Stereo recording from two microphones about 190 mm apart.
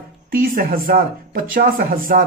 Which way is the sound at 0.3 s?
50° right (ahead or behind).